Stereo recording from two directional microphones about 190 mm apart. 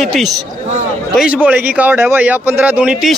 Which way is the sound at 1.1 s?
5° right (ahead or behind).